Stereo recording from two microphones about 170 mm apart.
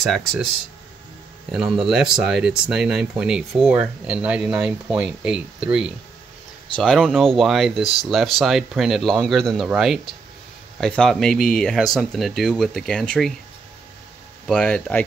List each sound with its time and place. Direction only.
1.5 s speech: centre (ahead or behind)
14.5 s speech: 5° left (ahead or behind)